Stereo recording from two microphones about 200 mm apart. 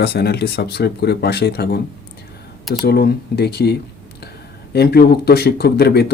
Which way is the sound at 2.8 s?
55° left (ahead or behind).